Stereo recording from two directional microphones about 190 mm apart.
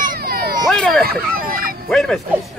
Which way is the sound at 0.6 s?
Centre (ahead or behind).